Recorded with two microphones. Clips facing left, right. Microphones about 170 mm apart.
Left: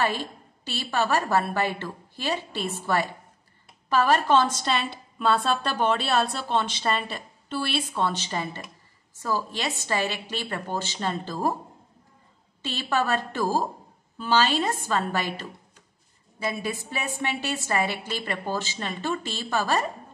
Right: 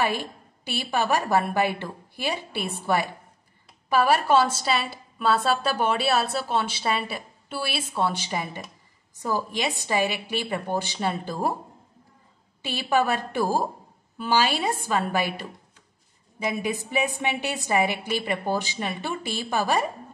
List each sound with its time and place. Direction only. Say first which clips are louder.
0.0 s a woman's voice: right 1 dB; 10° right (ahead or behind)
12.6 s a woman's voice: right 3 dB; 10° right (ahead or behind)